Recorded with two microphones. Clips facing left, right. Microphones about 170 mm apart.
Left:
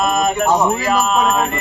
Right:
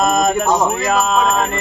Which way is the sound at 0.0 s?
40° right (ahead or behind).